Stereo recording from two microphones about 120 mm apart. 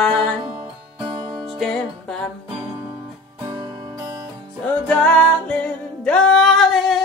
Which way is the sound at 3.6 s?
25° right (ahead or behind).